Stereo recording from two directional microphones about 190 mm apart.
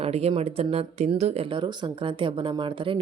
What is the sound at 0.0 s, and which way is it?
Speech, 30° right (ahead or behind).